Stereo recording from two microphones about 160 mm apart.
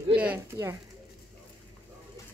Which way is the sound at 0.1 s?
10° right (ahead or behind).